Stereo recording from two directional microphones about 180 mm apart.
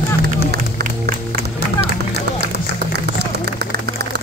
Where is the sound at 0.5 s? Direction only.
60° right (ahead or behind).